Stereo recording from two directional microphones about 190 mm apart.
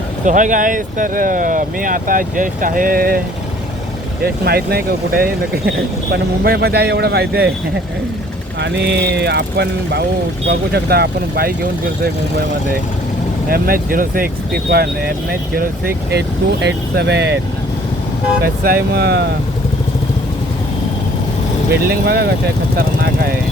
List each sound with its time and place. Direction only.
0.3 s speech: 40° right (ahead or behind)
4.2 s speech: 55° right (ahead or behind)
6.4 s speech: 55° right (ahead or behind)
8.6 s speech: 65° right (ahead or behind)
13.5 s speech: 50° right (ahead or behind)
18.4 s speech: 55° right (ahead or behind)
21.7 s speech: 55° right (ahead or behind)